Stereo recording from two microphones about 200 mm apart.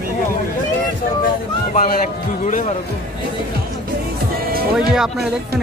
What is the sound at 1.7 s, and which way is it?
Speech, 40° left (ahead or behind).